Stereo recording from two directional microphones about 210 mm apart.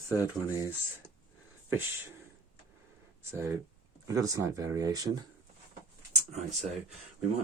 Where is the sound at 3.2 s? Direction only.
10° right (ahead or behind).